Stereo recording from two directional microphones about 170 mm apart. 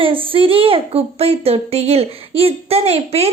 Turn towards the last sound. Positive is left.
turn(degrees=-35)  # may be behind; listen again after turning